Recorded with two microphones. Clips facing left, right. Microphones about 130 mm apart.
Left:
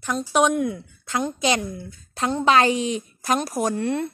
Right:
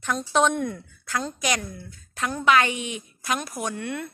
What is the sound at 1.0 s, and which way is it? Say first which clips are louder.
A woman's voice: left 5 dB; 20° left (ahead or behind).